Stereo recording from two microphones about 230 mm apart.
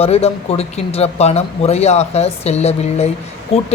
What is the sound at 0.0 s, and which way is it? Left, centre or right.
Speech, left.